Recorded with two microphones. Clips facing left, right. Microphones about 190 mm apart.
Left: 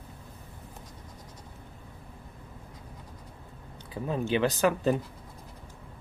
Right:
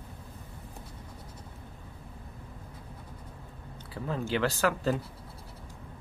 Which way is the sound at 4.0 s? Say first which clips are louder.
Left 3 dB; 15° left (ahead or behind).